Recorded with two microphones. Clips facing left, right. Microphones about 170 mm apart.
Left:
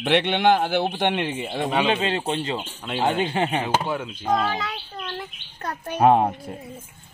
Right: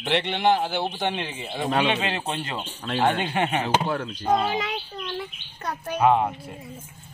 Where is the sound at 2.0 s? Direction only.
30° left (ahead or behind).